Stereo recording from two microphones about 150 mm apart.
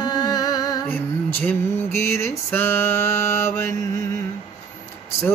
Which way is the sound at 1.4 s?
15° left (ahead or behind).